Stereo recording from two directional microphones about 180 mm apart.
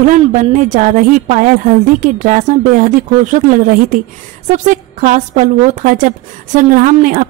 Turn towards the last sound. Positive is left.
turn(degrees=-50)  # may be behind; listen again after turning